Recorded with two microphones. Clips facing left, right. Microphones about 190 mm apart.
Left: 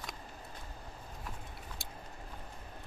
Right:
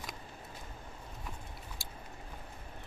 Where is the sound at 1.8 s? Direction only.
Centre (ahead or behind).